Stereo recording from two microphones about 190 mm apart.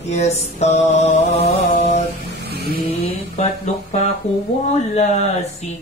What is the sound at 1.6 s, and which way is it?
Mantra, 55° left (ahead or behind).